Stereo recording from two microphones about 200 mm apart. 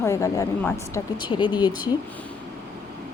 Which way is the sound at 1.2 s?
25° left (ahead or behind).